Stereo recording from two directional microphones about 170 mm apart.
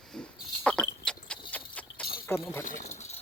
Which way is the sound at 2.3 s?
15° left (ahead or behind).